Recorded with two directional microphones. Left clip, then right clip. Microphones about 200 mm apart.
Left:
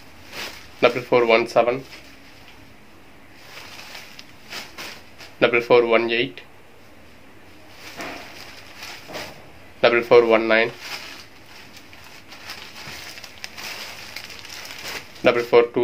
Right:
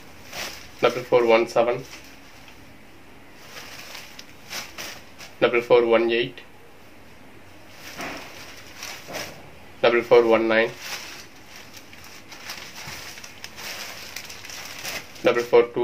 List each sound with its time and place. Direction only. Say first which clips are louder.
0.7 s speech: left 2 dB; 55° left (ahead or behind)
5.4 s speech: left 2 dB; 55° left (ahead or behind)
9.8 s speech: left 2 dB; 50° left (ahead or behind)
13.4 s a sound: left 6 dB; 45° left (ahead or behind)
15.2 s speech: left 2 dB; 55° left (ahead or behind)